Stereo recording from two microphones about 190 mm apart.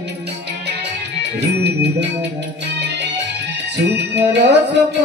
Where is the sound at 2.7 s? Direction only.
65° right (ahead or behind).